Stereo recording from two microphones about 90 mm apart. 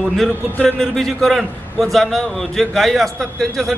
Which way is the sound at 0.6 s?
5° left (ahead or behind).